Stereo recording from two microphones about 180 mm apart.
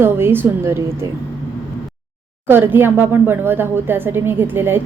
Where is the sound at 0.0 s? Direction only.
10° right (ahead or behind).